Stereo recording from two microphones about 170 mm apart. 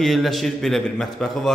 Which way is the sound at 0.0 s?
Centre (ahead or behind).